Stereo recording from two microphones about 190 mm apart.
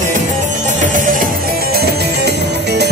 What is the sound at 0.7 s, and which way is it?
Music, 40° right (ahead or behind).